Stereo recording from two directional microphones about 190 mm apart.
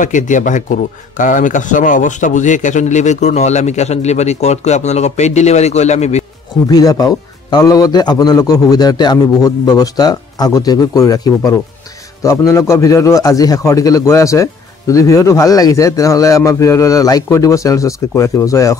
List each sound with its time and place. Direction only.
0.0 s speech: 40° left (ahead or behind)
6.7 s a man's voice: 20° left (ahead or behind)